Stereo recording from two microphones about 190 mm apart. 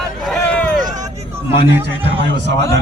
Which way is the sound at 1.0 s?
15° right (ahead or behind).